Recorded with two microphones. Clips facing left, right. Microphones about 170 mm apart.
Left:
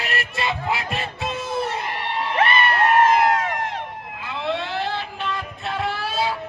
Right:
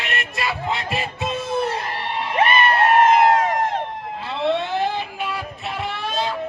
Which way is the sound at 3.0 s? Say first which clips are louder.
Right 3 dB; 25° right (ahead or behind).